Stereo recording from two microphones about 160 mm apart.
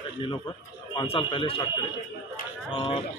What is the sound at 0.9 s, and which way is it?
Speech, 35° left (ahead or behind).